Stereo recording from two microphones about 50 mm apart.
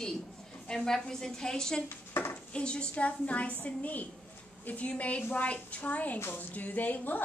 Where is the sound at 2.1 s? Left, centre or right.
Left.